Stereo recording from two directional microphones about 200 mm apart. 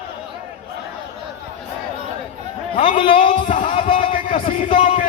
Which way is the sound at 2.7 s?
25° left (ahead or behind).